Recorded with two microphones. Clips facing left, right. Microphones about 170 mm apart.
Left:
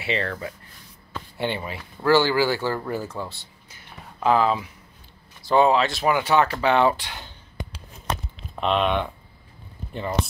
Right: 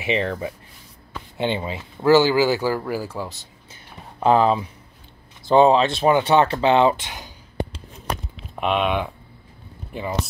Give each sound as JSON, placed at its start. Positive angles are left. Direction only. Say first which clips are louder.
{"t": 0.0, "sound": "speech", "louder": "right 4 dB", "side_deg": -15}
{"t": 3.7, "sound": "a sound", "louder": "right 2 dB", "side_deg": -25}
{"t": 5.5, "sound": "speech", "louder": "right 4 dB", "side_deg": -25}
{"t": 8.4, "sound": "speech", "louder": "right 1 dB", "side_deg": -5}